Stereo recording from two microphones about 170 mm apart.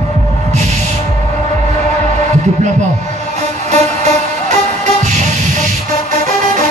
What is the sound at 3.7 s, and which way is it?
Music, 45° right (ahead or behind).